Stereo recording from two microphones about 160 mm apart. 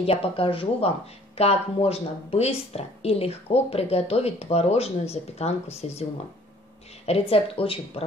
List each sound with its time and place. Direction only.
0.0 s speech: 35° left (ahead or behind)
7.1 s speech: 35° left (ahead or behind)